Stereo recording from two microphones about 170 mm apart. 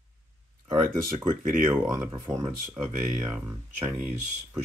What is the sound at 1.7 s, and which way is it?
Speech, 15° right (ahead or behind).